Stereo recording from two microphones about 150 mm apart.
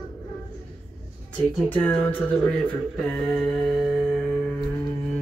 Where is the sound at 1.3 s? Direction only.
10° left (ahead or behind).